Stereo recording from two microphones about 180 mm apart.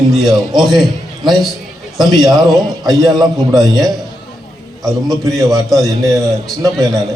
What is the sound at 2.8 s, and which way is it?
Speech, 20° right (ahead or behind).